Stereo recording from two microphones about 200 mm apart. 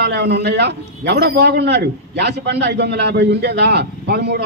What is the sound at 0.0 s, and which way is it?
A man's voice, 55° right (ahead or behind).